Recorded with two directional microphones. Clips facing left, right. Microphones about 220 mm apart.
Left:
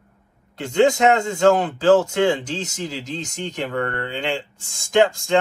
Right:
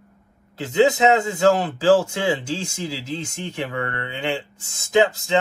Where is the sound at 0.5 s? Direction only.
5° right (ahead or behind).